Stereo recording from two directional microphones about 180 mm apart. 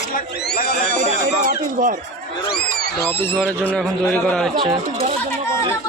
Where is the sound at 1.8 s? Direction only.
50° right (ahead or behind).